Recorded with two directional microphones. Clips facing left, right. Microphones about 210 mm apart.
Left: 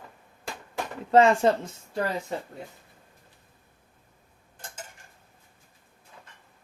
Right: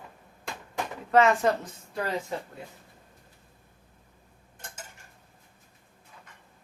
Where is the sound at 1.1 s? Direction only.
30° left (ahead or behind).